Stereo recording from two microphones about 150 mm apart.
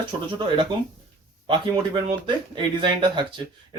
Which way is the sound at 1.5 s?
35° right (ahead or behind).